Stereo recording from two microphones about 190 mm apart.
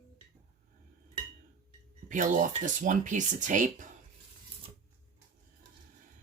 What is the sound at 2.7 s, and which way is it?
Speech, 40° right (ahead or behind).